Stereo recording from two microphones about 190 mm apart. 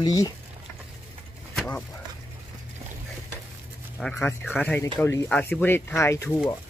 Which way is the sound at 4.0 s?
5° left (ahead or behind).